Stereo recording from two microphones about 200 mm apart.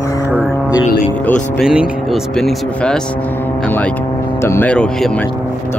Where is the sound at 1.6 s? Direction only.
Centre (ahead or behind).